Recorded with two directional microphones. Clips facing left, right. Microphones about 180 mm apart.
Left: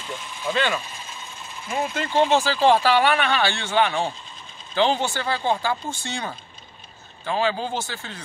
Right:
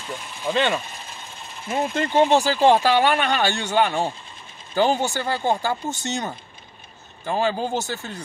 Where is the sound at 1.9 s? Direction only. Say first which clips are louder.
Right 3 dB; 45° right (ahead or behind).